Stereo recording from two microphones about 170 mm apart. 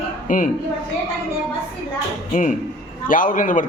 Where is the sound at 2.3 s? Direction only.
50° left (ahead or behind).